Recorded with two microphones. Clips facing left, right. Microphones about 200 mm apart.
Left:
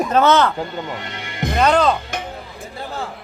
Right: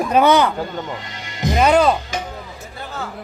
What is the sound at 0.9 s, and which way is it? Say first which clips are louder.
Music: left 4 dB; 60° left (ahead or behind).